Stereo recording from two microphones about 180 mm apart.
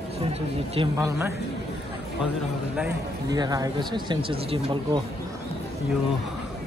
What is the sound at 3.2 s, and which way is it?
Speech, 20° right (ahead or behind).